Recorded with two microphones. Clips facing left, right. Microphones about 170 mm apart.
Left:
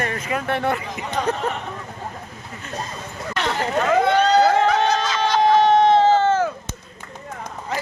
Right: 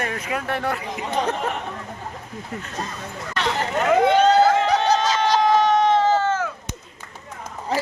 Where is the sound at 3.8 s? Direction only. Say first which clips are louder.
Right 2 dB; 15° right (ahead or behind).